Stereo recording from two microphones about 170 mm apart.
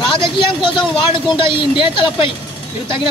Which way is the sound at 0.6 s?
30° left (ahead or behind).